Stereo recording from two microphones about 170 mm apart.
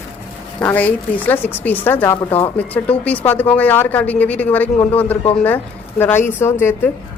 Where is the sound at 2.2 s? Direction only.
30° left (ahead or behind).